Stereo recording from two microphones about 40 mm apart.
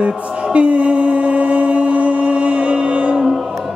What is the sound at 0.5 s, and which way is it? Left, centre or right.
Mantra, right.